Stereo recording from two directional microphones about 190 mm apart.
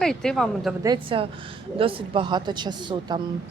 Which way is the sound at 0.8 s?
25° right (ahead or behind).